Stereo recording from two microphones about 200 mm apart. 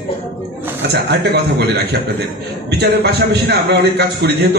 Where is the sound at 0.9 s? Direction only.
55° right (ahead or behind).